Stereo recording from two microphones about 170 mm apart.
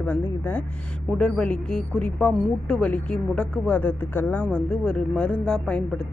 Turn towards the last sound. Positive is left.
turn(degrees=0)  # may be behind; listen again after turning